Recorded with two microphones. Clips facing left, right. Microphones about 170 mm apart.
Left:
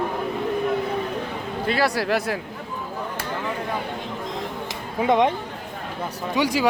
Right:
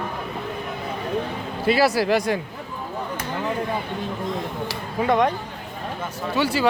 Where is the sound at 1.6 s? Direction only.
5° right (ahead or behind).